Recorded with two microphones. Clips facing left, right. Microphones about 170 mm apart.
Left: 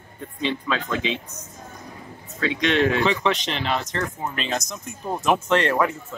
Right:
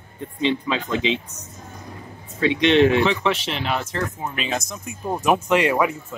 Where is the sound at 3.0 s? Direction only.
5° right (ahead or behind).